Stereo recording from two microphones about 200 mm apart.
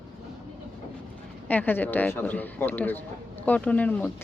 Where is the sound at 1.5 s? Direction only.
10° left (ahead or behind).